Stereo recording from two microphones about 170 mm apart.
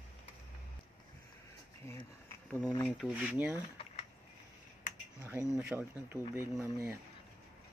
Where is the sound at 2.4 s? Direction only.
5° left (ahead or behind).